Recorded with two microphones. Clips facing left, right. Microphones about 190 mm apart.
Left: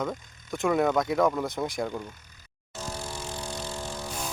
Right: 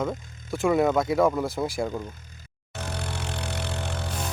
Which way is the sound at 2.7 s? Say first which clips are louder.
Right 2 dB; 65° right (ahead or behind).